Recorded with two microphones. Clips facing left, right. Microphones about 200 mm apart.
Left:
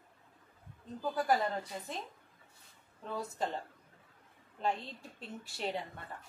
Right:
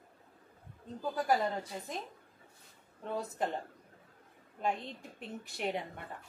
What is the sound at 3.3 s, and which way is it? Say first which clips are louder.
Speech: right 1 dB; 15° right (ahead or behind).